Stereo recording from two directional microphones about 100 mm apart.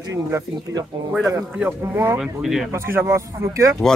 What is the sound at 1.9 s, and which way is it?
Speech, 25° right (ahead or behind).